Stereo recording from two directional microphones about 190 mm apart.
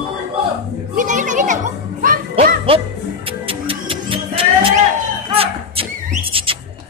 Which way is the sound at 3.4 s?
30° right (ahead or behind).